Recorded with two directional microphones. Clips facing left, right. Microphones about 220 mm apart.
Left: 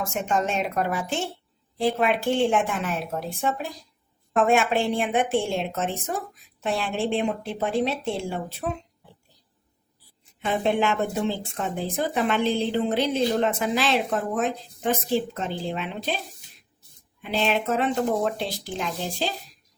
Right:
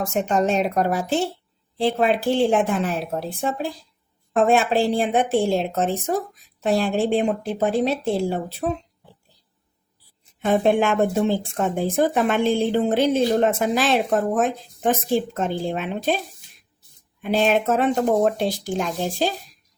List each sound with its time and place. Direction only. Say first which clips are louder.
0.1 s a woman's voice: right 6 dB; 35° right (ahead or behind)
10.4 s speech: right 5 dB; 50° right (ahead or behind)
17.2 s speech: right 5 dB; 45° right (ahead or behind)